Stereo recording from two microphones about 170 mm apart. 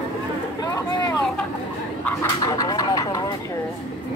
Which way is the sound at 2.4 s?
20° left (ahead or behind).